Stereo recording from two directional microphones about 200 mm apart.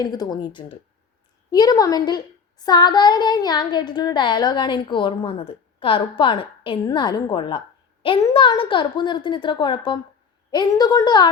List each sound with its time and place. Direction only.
0.0 s a woman's voice: 20° left (ahead or behind)